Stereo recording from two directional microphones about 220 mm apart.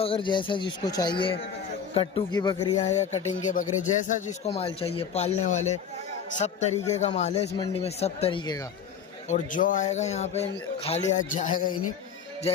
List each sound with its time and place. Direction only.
0.0 s speech: 25° left (ahead or behind)
2.7 s a man's voice: 30° left (ahead or behind)
9.3 s a man's voice: 35° left (ahead or behind)